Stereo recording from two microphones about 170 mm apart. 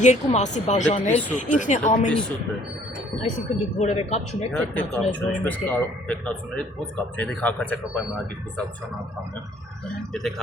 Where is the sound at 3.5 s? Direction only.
40° left (ahead or behind).